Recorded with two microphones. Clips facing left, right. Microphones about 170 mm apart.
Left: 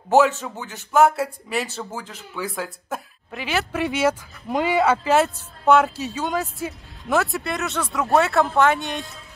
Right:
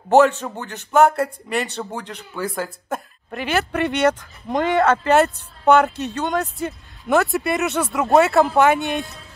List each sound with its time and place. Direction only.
0.1 s a man's voice: centre (ahead or behind)
7.6 s speech: 15° right (ahead or behind)
8.2 s a man's voice: centre (ahead or behind)